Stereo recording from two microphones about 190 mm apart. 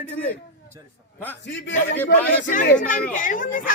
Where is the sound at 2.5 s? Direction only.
45° left (ahead or behind).